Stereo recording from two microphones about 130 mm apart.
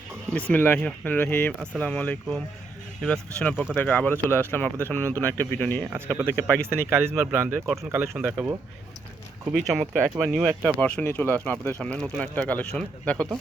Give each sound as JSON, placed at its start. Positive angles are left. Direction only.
{"t": 0.3, "sound": "speech", "side_deg": 10}
{"t": 5.9, "sound": "speech", "side_deg": -15}
{"t": 6.2, "sound": "speech", "side_deg": 10}
{"t": 6.9, "sound": "speech", "side_deg": -15}
{"t": 9.5, "sound": "speech", "side_deg": 0}